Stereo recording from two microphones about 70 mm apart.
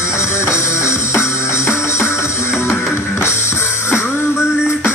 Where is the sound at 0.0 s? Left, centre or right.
Left.